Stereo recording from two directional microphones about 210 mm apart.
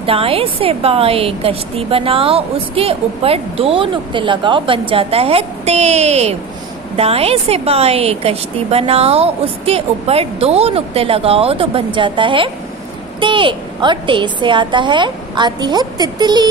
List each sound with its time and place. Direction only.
0.0 s a woman's voice: 25° right (ahead or behind)